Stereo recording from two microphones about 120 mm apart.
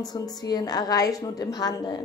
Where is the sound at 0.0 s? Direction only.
35° left (ahead or behind).